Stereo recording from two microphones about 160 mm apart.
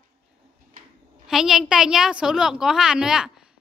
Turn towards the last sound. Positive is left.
turn(degrees=-5)  # may be behind; listen again after turning